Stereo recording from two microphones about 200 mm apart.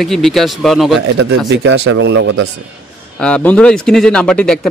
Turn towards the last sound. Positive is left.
turn(degrees=5)  # may be behind; listen again after turning